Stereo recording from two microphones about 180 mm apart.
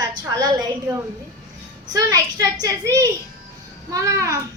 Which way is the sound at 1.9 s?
20° right (ahead or behind).